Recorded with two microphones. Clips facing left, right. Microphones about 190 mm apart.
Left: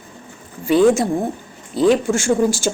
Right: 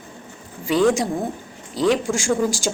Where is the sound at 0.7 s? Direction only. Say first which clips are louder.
Left 4 dB; 15° left (ahead or behind).